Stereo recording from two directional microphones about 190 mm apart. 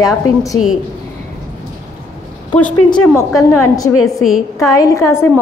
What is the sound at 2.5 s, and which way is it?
Speech, 5° left (ahead or behind).